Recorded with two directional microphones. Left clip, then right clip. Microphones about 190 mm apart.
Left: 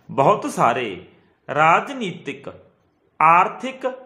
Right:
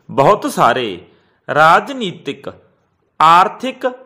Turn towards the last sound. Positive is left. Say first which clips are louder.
# right 6 dB
turn(degrees=-30)  # may be behind; listen again after turning